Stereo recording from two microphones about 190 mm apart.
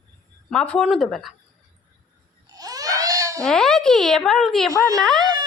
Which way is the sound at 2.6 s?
20° right (ahead or behind).